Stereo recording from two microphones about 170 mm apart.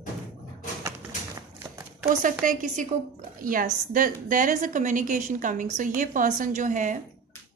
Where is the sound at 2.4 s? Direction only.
50° right (ahead or behind).